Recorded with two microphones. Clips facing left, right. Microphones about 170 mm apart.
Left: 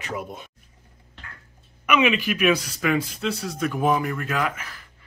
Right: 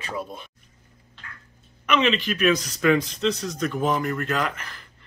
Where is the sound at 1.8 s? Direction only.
10° left (ahead or behind).